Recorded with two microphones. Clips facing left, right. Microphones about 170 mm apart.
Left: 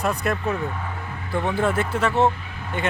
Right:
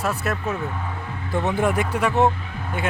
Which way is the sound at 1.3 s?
20° right (ahead or behind).